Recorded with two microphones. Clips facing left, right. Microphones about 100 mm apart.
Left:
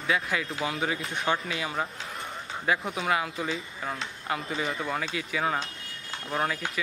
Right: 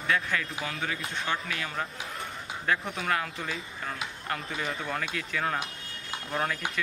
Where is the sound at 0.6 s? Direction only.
20° left (ahead or behind).